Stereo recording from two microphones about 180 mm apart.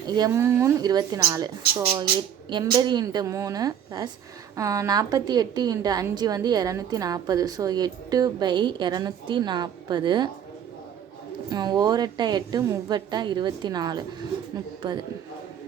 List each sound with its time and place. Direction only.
0.1 s a woman's voice: 20° right (ahead or behind)
11.4 s a woman's voice: 20° right (ahead or behind)